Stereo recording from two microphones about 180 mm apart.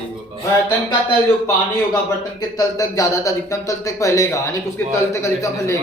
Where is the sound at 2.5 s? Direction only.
20° left (ahead or behind).